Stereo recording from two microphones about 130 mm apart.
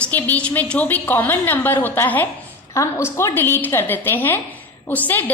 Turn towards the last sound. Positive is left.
turn(degrees=15)  # may be behind; listen again after turning